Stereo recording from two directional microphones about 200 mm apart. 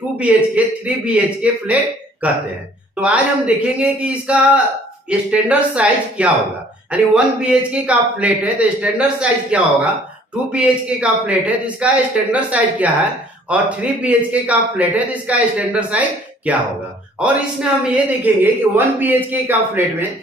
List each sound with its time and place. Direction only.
0.2 s a man's voice: 5° right (ahead or behind)